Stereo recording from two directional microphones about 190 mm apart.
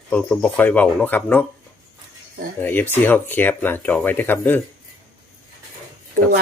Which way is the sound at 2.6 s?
10° left (ahead or behind).